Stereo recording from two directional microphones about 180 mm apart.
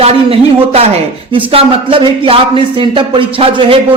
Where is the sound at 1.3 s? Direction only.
30° right (ahead or behind).